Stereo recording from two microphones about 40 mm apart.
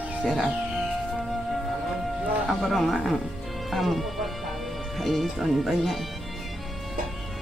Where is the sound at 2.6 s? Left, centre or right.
Centre.